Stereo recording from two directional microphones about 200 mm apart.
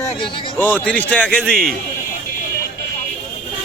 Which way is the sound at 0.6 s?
10° left (ahead or behind).